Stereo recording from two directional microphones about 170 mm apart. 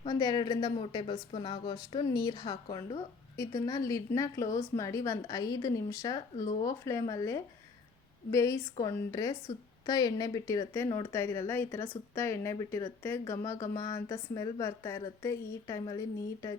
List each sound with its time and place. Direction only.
0.0 s a woman's voice: 25° left (ahead or behind)